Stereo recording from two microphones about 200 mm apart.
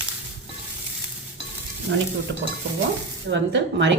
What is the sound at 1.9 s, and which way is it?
Speech, 75° right (ahead or behind).